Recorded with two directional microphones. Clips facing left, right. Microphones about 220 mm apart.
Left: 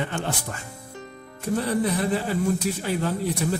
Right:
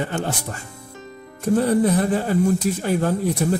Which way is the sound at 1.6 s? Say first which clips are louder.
Right 6 dB; 45° right (ahead or behind).